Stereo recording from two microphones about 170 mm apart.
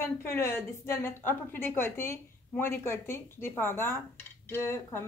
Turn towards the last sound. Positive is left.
turn(degrees=15)  # may be behind; listen again after turning